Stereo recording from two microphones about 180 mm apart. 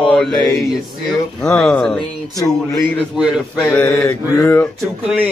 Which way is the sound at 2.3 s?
20° left (ahead or behind).